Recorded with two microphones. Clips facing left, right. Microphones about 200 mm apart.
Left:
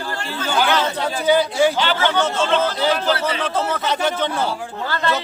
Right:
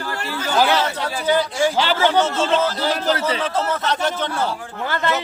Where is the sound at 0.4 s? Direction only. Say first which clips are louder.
Right 1 dB; 35° right (ahead or behind).